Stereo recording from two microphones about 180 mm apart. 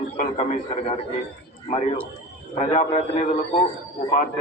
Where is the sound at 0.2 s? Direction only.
35° left (ahead or behind).